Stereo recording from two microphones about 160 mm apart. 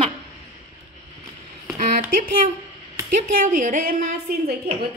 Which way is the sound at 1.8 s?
60° right (ahead or behind).